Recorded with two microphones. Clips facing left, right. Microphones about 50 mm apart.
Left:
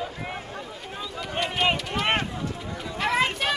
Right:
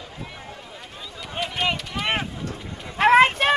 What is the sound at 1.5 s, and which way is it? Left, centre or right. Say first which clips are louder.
Run: left 1 dB; centre.